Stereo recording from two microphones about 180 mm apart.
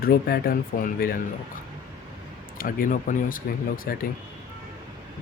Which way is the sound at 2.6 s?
50° left (ahead or behind).